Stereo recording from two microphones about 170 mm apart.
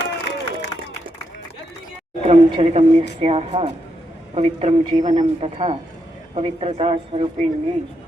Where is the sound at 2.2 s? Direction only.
40° right (ahead or behind).